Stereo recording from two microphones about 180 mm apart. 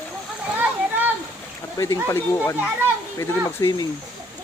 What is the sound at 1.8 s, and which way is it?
Speech, 15° left (ahead or behind).